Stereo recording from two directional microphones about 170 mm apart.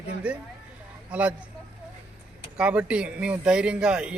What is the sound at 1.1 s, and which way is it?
Speech, 5° right (ahead or behind).